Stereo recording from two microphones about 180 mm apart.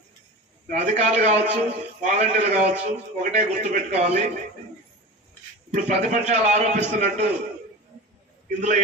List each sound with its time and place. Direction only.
0.7 s a man's voice: 40° right (ahead or behind)
5.7 s a man's voice: 40° right (ahead or behind)
8.5 s a man's voice: 40° right (ahead or behind)